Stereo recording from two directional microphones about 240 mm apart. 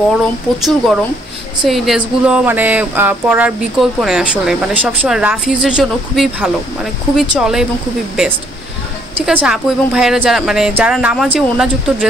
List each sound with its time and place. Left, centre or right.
0.2 s speech: centre
9.2 s speech: centre